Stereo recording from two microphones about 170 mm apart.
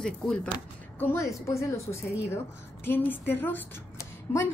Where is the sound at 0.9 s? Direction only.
15° left (ahead or behind).